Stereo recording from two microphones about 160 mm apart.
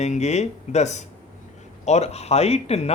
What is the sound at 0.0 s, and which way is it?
Speech, 45° left (ahead or behind).